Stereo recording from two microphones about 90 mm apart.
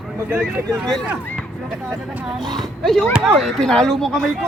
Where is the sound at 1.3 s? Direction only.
5° left (ahead or behind).